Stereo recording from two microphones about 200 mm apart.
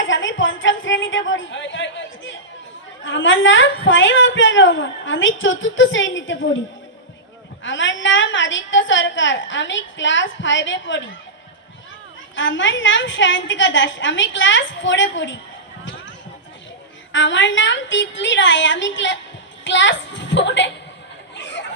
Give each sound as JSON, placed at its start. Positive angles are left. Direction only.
{"t": 0.0, "sound": "a woman's voice", "side_deg": 70}
{"t": 7.6, "sound": "a woman's voice", "side_deg": 70}
{"t": 12.4, "sound": "a woman's voice", "side_deg": 70}
{"t": 15.8, "sound": "basketball bounce", "side_deg": 65}
{"t": 17.1, "sound": "a woman's voice", "side_deg": 65}
{"t": 21.3, "sound": "a sound", "side_deg": 60}